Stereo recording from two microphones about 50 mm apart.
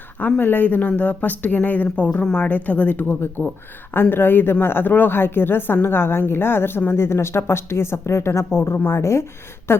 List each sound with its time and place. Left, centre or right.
0.2 s speech: left
3.4 s speech: left
4.1 s a woman's voice: left
8.5 s a woman's voice: left
9.0 s speech: left
9.7 s a sound: left